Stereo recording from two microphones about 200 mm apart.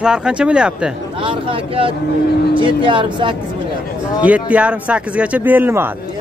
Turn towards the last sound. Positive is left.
turn(degrees=-10)  # may be behind; listen again after turning